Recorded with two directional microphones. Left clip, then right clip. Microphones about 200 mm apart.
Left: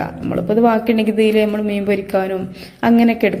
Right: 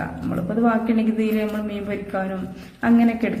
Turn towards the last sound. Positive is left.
turn(degrees=35)  # may be behind; listen again after turning